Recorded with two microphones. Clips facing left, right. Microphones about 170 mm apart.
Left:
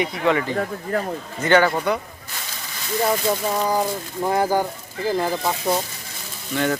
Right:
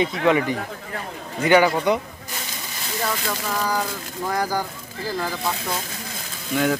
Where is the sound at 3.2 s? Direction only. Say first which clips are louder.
Left 4 dB; 25° left (ahead or behind).